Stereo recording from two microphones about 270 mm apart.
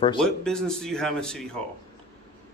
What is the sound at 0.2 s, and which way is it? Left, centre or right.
Speech, centre.